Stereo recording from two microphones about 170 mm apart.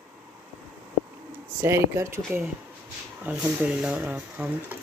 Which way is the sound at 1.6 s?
15° right (ahead or behind).